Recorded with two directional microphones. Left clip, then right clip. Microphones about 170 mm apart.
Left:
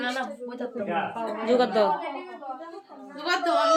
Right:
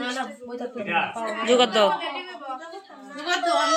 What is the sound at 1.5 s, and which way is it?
Speech, 15° right (ahead or behind).